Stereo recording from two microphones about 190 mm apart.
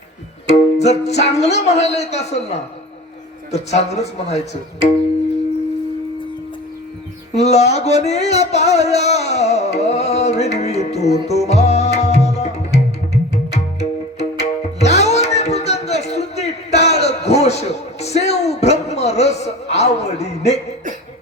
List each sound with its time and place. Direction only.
0.4 s speech: 35° left (ahead or behind)
7.3 s speech: 35° left (ahead or behind)
11.3 s music: 35° left (ahead or behind)